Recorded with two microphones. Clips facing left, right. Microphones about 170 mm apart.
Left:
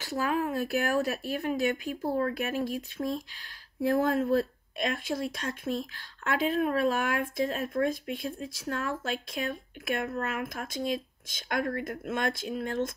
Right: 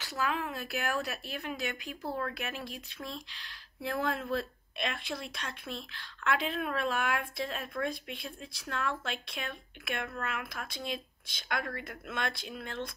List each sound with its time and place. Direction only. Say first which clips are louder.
0.0 s speech: left 5 dB; 45° left (ahead or behind)